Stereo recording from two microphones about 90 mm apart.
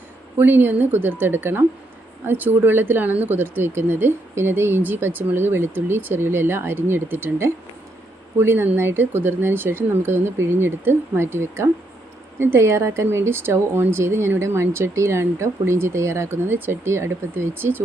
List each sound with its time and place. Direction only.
0.3 s speech: 25° right (ahead or behind)